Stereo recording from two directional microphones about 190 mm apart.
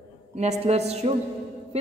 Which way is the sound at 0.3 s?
35° right (ahead or behind).